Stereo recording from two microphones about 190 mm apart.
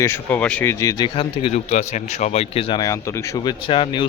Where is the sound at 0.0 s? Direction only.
10° left (ahead or behind).